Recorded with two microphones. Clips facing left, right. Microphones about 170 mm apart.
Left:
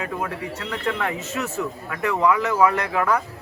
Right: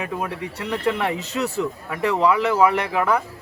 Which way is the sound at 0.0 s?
20° right (ahead or behind).